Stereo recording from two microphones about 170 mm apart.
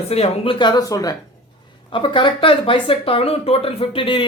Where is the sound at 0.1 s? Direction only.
35° left (ahead or behind).